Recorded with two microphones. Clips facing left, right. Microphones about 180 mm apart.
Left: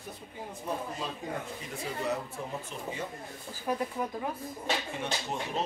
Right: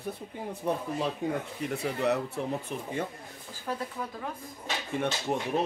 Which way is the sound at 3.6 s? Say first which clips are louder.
Left 3 dB; 15° left (ahead or behind).